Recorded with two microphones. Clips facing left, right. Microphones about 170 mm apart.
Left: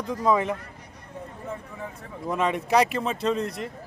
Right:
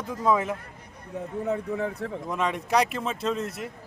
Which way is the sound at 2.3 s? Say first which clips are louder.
Left 3 dB; centre (ahead or behind).